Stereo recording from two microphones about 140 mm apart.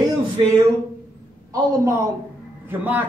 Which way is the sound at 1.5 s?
25° right (ahead or behind).